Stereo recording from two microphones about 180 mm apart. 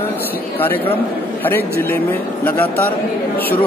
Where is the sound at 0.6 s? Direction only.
10° left (ahead or behind).